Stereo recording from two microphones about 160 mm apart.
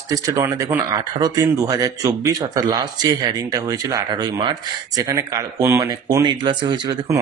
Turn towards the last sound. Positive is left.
turn(degrees=-25)  # may be behind; listen again after turning